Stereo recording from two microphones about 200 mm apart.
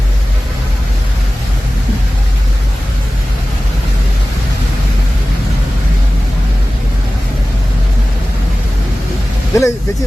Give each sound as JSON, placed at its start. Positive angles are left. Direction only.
{"t": 9.5, "sound": "vehicle", "side_deg": 15}